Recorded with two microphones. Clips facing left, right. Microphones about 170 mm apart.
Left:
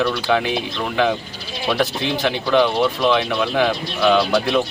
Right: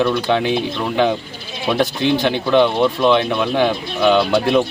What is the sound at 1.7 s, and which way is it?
Speech, 25° right (ahead or behind).